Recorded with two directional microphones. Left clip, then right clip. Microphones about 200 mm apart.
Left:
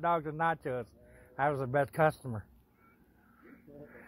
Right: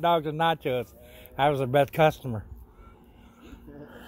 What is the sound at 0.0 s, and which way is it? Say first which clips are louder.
Speech: right 7 dB; 25° right (ahead or behind).